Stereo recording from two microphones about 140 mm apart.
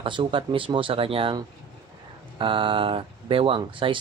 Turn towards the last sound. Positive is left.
turn(degrees=-35)  # may be behind; listen again after turning